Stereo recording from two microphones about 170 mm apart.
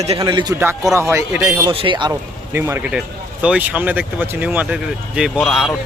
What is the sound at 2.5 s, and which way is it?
Speech, 15° right (ahead or behind).